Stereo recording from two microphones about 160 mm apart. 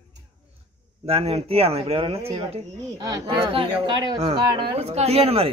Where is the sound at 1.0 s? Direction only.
40° right (ahead or behind).